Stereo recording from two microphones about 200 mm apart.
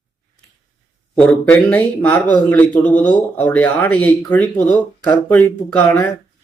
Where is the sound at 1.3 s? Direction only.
10° left (ahead or behind).